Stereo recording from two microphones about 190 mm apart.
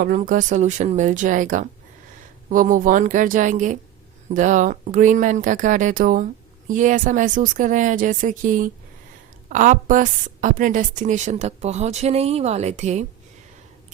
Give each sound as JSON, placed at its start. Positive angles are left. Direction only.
{"t": 0.0, "sound": "a woman's voice", "side_deg": -45}